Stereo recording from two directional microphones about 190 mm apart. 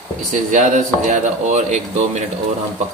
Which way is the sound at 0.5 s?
40° right (ahead or behind).